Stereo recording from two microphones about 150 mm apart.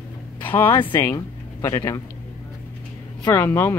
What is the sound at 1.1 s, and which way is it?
Speech, 20° left (ahead or behind).